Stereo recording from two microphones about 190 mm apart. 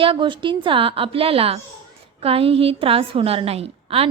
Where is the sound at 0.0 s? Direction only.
25° right (ahead or behind).